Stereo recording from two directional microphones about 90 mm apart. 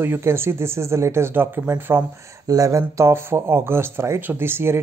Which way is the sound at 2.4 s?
40° right (ahead or behind).